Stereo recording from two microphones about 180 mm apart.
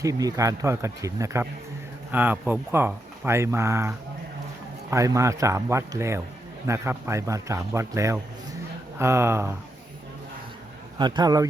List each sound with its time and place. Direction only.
0.0 s speech: 20° right (ahead or behind)
10.9 s speech: 25° right (ahead or behind)